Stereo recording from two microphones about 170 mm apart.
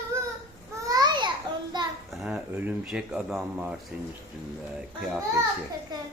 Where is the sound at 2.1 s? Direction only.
5° right (ahead or behind).